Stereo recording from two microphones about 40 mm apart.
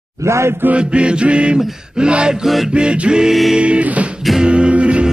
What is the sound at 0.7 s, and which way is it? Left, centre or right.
Music, right.